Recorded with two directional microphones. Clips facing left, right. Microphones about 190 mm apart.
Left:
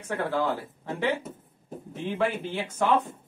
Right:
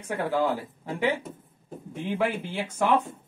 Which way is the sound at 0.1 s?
15° right (ahead or behind).